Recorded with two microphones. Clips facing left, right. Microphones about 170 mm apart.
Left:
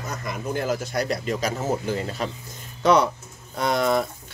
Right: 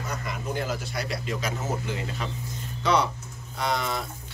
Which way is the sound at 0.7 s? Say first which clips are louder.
Left 6 dB; 45° left (ahead or behind).